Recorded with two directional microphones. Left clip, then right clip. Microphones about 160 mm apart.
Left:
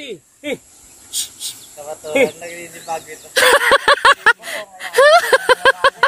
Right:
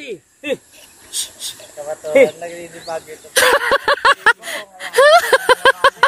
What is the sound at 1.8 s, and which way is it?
Speech, 75° left (ahead or behind).